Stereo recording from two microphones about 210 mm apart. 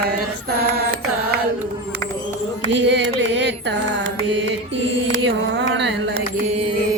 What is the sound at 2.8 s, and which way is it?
Carnatic music, 55° right (ahead or behind).